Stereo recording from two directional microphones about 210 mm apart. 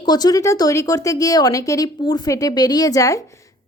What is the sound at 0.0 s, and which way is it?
A woman's voice, 20° left (ahead or behind).